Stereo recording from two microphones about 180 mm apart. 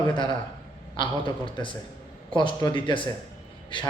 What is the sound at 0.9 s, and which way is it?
A man's voice, 25° left (ahead or behind).